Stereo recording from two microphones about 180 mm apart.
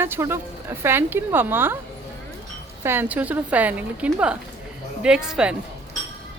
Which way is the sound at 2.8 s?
10° right (ahead or behind).